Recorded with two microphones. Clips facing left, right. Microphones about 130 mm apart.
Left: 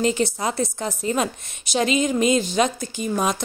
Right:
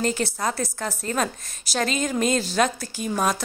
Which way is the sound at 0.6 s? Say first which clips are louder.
Left 3 dB; 20° left (ahead or behind).